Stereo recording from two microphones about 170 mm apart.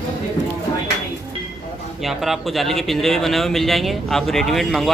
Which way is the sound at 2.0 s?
Centre (ahead or behind).